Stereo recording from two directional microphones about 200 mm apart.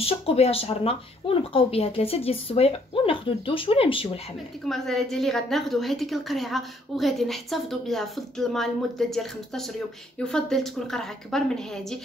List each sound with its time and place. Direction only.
0.0 s speech: 30° left (ahead or behind)
4.6 s a woman's voice: centre (ahead or behind)